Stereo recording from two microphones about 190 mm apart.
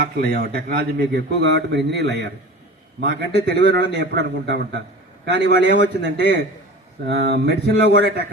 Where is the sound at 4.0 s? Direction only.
65° right (ahead or behind).